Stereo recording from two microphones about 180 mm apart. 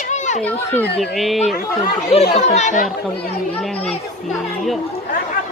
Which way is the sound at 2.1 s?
35° left (ahead or behind).